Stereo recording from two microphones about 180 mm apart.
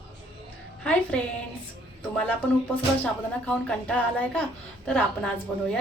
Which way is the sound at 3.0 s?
10° left (ahead or behind).